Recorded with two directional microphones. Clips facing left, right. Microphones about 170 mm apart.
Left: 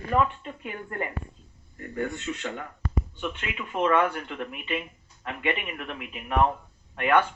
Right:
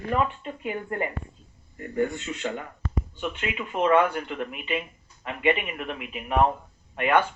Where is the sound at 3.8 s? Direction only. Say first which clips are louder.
Right 3 dB; 20° right (ahead or behind).